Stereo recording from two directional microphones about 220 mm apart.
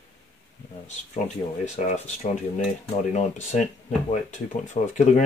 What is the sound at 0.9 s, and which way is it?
Speech, 30° left (ahead or behind).